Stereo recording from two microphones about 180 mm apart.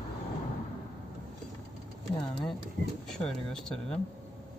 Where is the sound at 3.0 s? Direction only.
Centre (ahead or behind).